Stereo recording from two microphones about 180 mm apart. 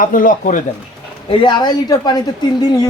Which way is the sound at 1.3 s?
25° left (ahead or behind).